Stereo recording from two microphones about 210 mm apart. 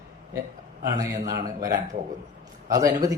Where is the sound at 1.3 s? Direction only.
40° right (ahead or behind).